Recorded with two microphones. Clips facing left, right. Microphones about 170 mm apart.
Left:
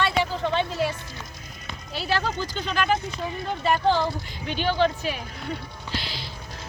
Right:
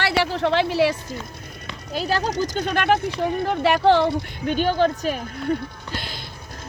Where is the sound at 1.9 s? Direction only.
40° right (ahead or behind).